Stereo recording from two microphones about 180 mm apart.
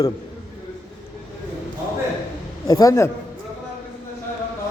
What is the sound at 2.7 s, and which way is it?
Speech, 20° left (ahead or behind).